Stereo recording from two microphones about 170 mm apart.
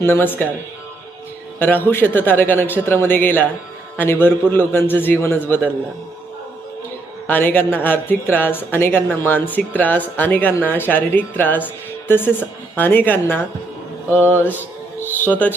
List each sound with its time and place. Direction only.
0.0 s speech: 10° left (ahead or behind)
1.5 s speech: 10° left (ahead or behind)
7.3 s speech: 10° left (ahead or behind)